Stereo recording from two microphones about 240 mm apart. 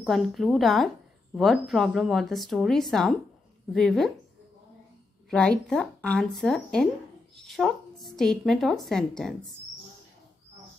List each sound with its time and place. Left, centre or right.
0.0 s a woman's voice: centre
5.3 s a woman's voice: centre